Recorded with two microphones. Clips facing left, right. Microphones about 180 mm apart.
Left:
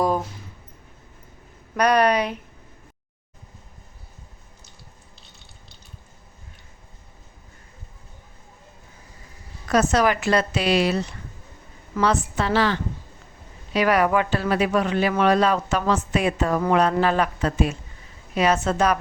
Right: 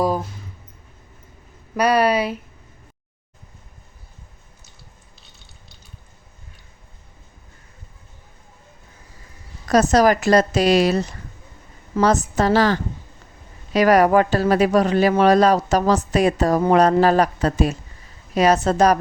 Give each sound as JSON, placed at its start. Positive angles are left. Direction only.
{"t": 1.7, "sound": "speech", "side_deg": -5}
{"t": 9.6, "sound": "a man's voice", "side_deg": -40}